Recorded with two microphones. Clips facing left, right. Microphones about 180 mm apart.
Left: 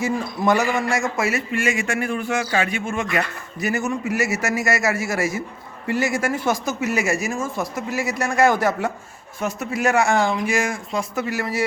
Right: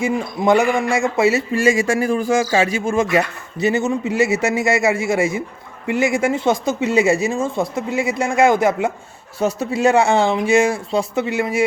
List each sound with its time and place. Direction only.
0.1 s a man's voice: 20° right (ahead or behind)